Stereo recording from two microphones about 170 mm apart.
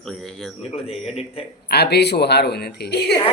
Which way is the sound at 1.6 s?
75° left (ahead or behind).